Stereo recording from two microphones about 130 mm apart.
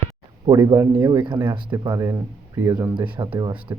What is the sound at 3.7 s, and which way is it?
Speech, 25° right (ahead or behind).